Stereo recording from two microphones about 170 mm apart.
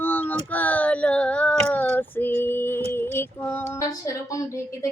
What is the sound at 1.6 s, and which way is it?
Female singing, 10° left (ahead or behind).